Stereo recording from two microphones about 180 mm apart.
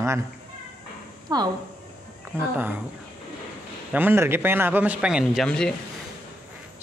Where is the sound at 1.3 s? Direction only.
20° right (ahead or behind).